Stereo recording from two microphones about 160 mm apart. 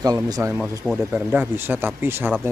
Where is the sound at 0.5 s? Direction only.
5° right (ahead or behind).